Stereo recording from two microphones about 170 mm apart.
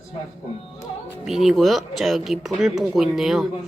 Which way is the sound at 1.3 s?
Centre (ahead or behind).